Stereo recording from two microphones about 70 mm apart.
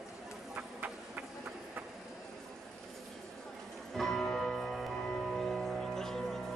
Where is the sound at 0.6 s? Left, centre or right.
Right.